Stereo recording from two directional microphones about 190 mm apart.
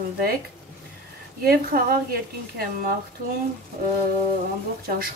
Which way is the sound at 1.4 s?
50° right (ahead or behind).